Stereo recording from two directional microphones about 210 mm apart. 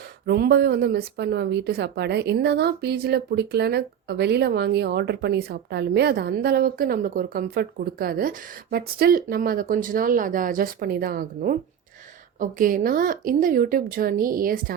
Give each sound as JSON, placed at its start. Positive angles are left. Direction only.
{"t": 0.3, "sound": "speech", "side_deg": -50}